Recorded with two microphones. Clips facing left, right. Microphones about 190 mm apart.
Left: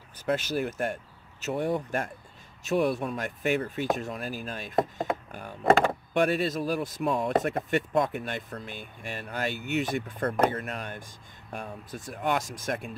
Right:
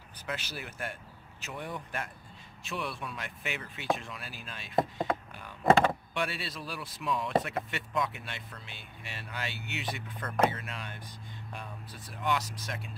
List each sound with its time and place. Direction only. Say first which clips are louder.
0.2 s speech: left 12 dB; 45° left (ahead or behind)
5.3 s a sound: left 7 dB; 45° left (ahead or behind)
6.1 s speech: left 10 dB; 45° left (ahead or behind)